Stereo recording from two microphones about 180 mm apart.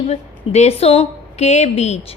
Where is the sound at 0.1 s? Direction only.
35° left (ahead or behind).